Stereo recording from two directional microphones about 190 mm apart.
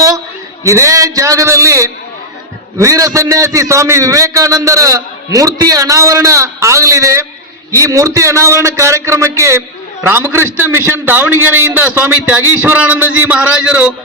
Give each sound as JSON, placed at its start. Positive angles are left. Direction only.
{"t": 0.6, "sound": "a man's voice", "side_deg": -15}